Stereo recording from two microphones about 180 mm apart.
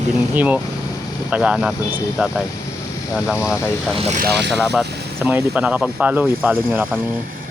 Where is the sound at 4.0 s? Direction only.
40° right (ahead or behind).